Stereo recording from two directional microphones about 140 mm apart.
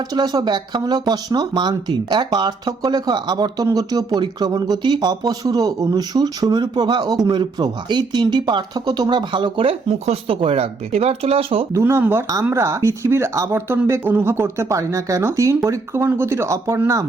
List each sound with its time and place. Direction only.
0.1 s speech: 25° right (ahead or behind); by 11.6 s 45° right (ahead or behind)
11.7 s speech: 20° right (ahead or behind)